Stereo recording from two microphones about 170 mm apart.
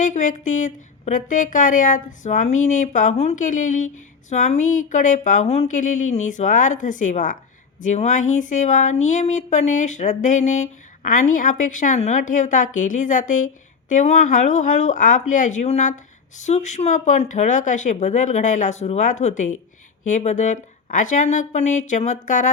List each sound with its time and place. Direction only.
0.0 s speech: 50° left (ahead or behind)